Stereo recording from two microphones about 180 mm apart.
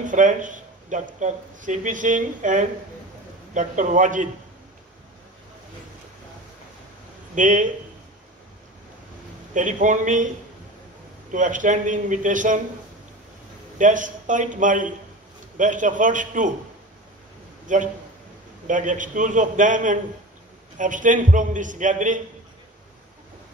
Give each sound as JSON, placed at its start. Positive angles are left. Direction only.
{"t": 0.0, "sound": "speech", "side_deg": -45}
{"t": 7.3, "sound": "speech", "side_deg": -45}
{"t": 9.5, "sound": "speech", "side_deg": -45}
{"t": 11.3, "sound": "speech", "side_deg": -45}
{"t": 13.7, "sound": "speech", "side_deg": -45}
{"t": 17.7, "sound": "speech", "side_deg": -45}